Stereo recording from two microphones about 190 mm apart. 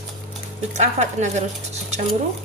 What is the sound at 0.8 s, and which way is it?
Speech, 35° right (ahead or behind).